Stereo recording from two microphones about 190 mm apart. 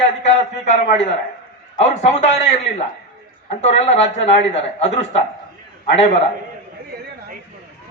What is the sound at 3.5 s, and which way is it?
A man's voice, 35° left (ahead or behind).